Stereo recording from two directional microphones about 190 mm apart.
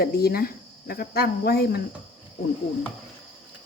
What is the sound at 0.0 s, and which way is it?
Speech, 55° left (ahead or behind).